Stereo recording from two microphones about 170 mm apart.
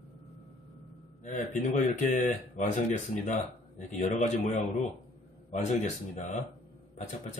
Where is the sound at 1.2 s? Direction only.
45° left (ahead or behind).